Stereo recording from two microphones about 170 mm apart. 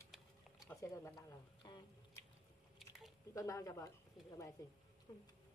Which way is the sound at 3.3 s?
20° left (ahead or behind).